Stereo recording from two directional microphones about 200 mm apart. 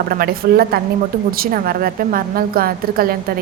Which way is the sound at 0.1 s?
50° right (ahead or behind).